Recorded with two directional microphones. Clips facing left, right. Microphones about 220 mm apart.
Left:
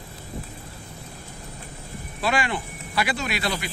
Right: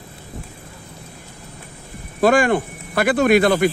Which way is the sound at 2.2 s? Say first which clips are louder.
Right 11 dB; 50° right (ahead or behind).